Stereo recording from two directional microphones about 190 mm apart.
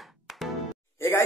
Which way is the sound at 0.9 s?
15° left (ahead or behind).